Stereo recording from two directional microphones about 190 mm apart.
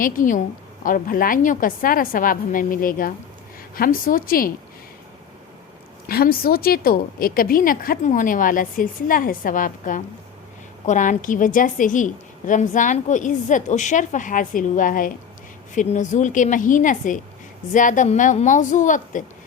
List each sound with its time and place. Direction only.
0.0 s a woman's voice: 45° left (ahead or behind)
6.1 s a woman's voice: 50° left (ahead or behind)